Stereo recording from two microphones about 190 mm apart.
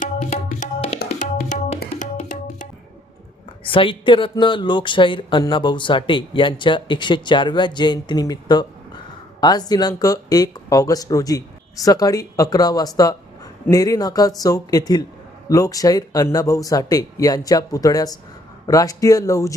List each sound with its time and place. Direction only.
0.0 s tabla: 40° left (ahead or behind)
1.2 s music: 40° left (ahead or behind)
3.6 s speech: 25° left (ahead or behind)